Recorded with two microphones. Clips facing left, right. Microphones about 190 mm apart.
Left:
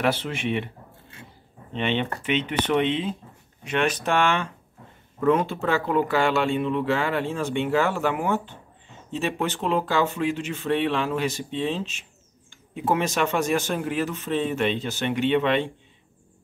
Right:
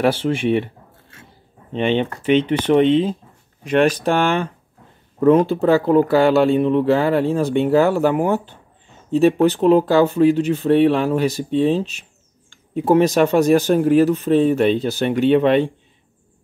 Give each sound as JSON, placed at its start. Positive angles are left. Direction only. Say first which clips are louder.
{"t": 0.0, "sound": "speech", "louder": "right 7 dB", "side_deg": -30}
{"t": 1.7, "sound": "speech", "louder": "right 7 dB", "side_deg": -35}